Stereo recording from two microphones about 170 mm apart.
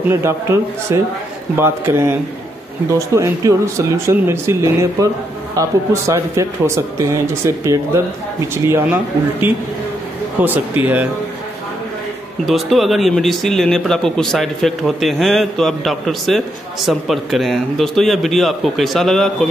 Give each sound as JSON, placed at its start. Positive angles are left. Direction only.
{"t": 0.0, "sound": "speech", "side_deg": -15}
{"t": 3.2, "sound": "speech", "side_deg": -15}
{"t": 12.4, "sound": "speech", "side_deg": 0}